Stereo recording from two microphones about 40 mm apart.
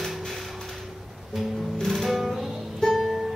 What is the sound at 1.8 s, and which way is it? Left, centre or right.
Music, centre.